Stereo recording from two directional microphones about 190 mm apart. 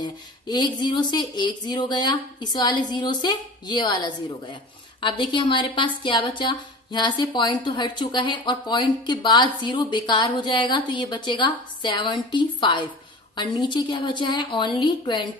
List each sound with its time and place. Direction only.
0.0 s a woman's voice: 20° left (ahead or behind)